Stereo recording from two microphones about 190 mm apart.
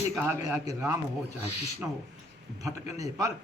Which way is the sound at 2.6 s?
15° right (ahead or behind).